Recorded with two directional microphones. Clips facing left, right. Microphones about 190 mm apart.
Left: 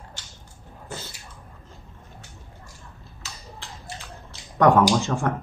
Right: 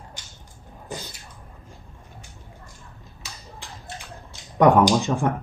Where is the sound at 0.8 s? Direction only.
15° right (ahead or behind).